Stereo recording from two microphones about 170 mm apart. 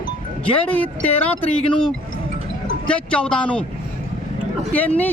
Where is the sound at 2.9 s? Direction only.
5° left (ahead or behind).